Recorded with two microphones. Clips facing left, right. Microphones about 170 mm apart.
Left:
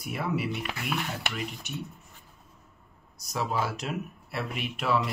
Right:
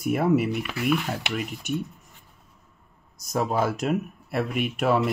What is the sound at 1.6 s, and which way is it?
Speech, 50° right (ahead or behind).